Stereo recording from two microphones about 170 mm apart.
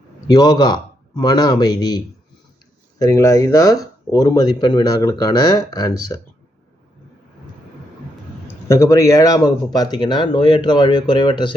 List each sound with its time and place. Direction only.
0.3 s speech: 25° left (ahead or behind)
3.0 s speech: 20° left (ahead or behind)
8.6 s speech: 15° left (ahead or behind)